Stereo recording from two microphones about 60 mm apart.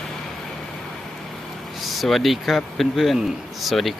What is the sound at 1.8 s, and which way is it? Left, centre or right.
Speech, centre.